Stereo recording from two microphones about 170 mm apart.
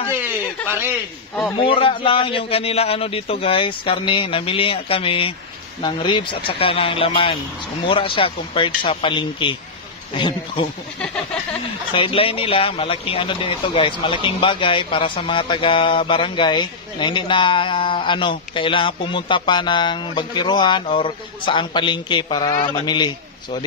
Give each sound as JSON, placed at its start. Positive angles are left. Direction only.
{"t": 1.6, "sound": "a man's voice", "side_deg": 30}
{"t": 11.9, "sound": "a man's voice", "side_deg": 30}